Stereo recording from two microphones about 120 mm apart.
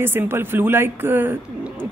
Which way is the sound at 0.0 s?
20° right (ahead or behind).